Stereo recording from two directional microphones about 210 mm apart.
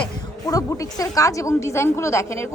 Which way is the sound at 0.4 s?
15° left (ahead or behind).